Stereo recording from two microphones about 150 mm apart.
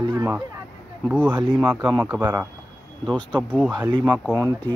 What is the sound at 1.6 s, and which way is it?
Speech, 15° right (ahead or behind).